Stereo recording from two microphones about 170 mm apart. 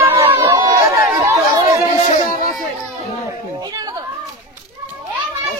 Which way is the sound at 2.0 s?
45° left (ahead or behind).